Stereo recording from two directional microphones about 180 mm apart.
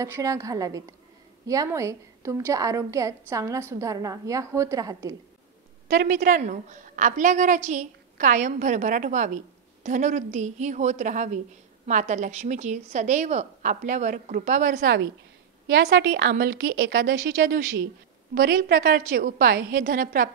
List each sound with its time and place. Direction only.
0.0 s a woman's voice: 15° right (ahead or behind)
5.9 s a woman's voice: 50° right (ahead or behind)